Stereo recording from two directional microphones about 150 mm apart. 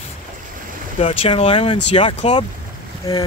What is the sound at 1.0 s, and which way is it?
Speech, 40° left (ahead or behind).